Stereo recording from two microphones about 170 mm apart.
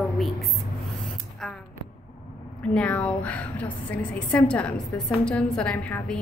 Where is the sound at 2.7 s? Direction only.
10° left (ahead or behind).